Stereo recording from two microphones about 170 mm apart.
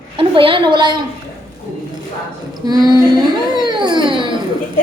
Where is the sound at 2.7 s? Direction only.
25° right (ahead or behind).